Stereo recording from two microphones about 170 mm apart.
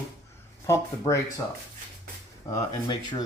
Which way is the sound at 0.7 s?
15° left (ahead or behind).